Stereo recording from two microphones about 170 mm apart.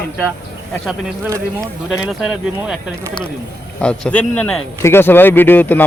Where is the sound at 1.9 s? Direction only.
Centre (ahead or behind).